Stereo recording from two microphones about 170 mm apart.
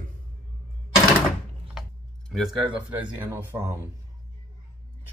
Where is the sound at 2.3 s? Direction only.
Centre (ahead or behind).